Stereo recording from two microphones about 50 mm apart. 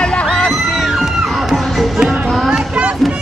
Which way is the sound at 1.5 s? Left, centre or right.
Centre.